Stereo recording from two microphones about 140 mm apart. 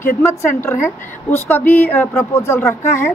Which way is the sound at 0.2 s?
20° left (ahead or behind).